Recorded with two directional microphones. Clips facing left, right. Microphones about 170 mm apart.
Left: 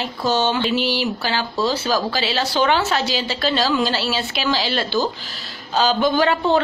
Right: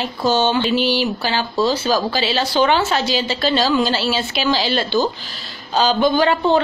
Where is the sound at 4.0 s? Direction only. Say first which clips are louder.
Right 3 dB; centre (ahead or behind).